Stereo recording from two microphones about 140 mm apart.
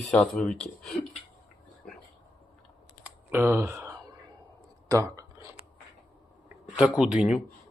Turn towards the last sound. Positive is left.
turn(degrees=-5)  # may be behind; listen again after turning